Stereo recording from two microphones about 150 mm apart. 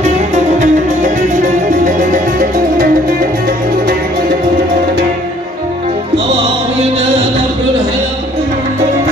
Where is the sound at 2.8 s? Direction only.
90° right.